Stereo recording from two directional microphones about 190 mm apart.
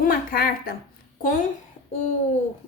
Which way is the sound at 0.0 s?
50° left (ahead or behind).